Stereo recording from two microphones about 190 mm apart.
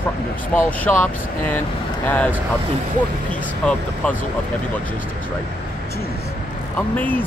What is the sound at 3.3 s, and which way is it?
Speech, 5° left (ahead or behind).